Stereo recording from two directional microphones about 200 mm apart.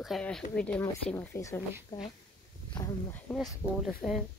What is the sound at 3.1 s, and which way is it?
Speech, centre (ahead or behind).